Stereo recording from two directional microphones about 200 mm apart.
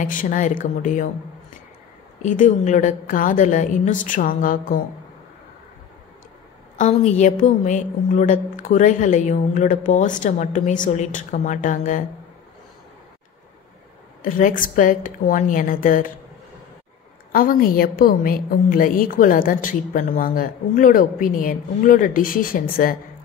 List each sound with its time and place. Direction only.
0.0 s a woman's voice: 40° left (ahead or behind)
2.2 s a woman's voice: 40° left (ahead or behind)
6.8 s a woman's voice: 35° left (ahead or behind)
14.2 s a woman's voice: 40° left (ahead or behind)
17.3 s a woman's voice: 45° left (ahead or behind)